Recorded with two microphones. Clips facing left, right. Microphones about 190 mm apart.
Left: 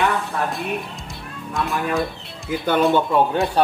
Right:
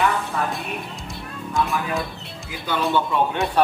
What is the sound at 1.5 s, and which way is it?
Speech, centre (ahead or behind).